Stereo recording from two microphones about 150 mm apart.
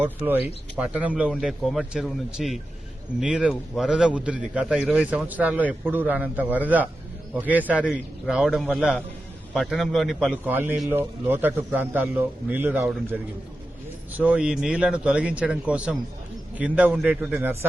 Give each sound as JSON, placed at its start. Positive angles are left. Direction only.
{"t": 0.0, "sound": "a man's voice", "side_deg": -10}
{"t": 10.4, "sound": "a man's voice", "side_deg": -15}
{"t": 14.1, "sound": "a man's voice", "side_deg": -10}
{"t": 17.4, "sound": "a man's voice", "side_deg": -15}